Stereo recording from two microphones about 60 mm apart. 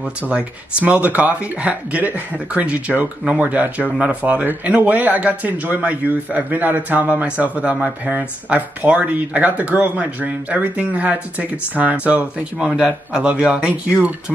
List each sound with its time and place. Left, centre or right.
0.3 s speech: right